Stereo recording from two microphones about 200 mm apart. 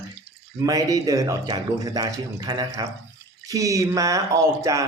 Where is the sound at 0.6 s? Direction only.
15° right (ahead or behind).